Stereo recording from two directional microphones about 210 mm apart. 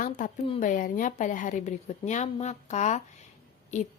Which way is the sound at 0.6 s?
40° left (ahead or behind).